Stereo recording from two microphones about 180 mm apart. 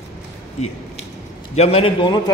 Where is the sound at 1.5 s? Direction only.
35° left (ahead or behind).